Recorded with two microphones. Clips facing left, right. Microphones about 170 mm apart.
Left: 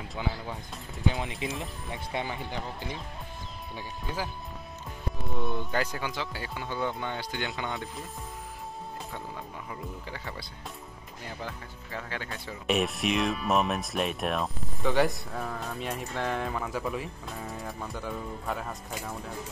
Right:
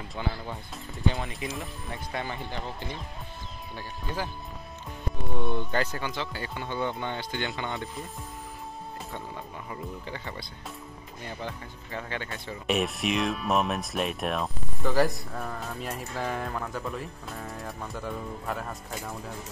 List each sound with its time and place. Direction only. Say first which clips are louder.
0.1 s speech: even; 5° left (ahead or behind)
1.2 s speech: left 1 dB; 20° left (ahead or behind)
2.2 s speech: even; 5° left (ahead or behind)
5.3 s speech: right 2 dB; 5° left (ahead or behind)
9.7 s speech: right 2 dB; 5° left (ahead or behind)